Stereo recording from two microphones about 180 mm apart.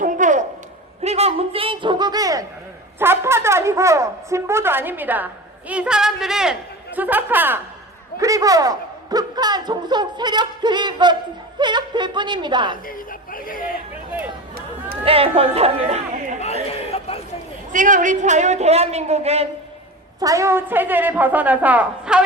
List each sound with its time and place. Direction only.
0.0 s a sound: 45° right (ahead or behind); by 2.4 s 20° right (ahead or behind)
3.0 s a man's voice: 15° right (ahead or behind)
12.7 s speech: 50° left (ahead or behind)
15.0 s a woman's voice: 30° right (ahead or behind)
17.7 s a woman's voice: 45° right (ahead or behind)
20.1 s speech: 20° right (ahead or behind)